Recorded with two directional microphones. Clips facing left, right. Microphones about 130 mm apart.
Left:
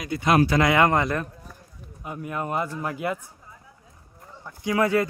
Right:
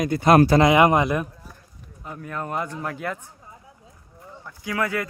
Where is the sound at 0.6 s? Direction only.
20° right (ahead or behind).